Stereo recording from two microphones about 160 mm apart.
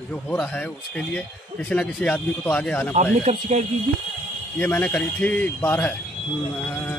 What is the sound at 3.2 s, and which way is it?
Speech, 45° right (ahead or behind).